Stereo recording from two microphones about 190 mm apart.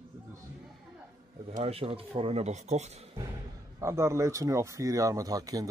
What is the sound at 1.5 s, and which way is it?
Speech, 30° right (ahead or behind).